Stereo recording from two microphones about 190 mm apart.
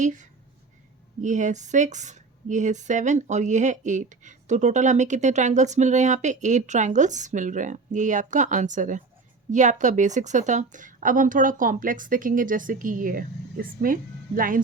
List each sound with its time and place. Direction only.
0.0 s a woman's voice: 40° right (ahead or behind)